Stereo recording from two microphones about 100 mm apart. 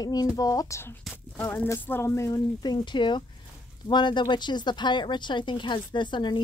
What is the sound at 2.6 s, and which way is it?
Speech, 50° left (ahead or behind).